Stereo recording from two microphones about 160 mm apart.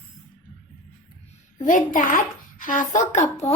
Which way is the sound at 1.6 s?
55° left (ahead or behind).